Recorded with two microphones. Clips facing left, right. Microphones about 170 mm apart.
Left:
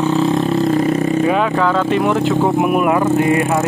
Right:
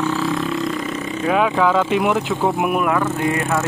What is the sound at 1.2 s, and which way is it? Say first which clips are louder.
Speech: left 2 dB; centre (ahead or behind).